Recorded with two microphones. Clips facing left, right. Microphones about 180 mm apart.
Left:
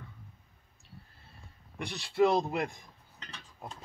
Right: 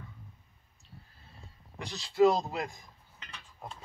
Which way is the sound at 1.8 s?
60° left (ahead or behind).